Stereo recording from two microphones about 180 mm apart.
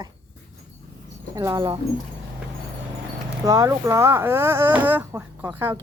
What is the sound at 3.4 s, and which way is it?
Speech, 20° right (ahead or behind).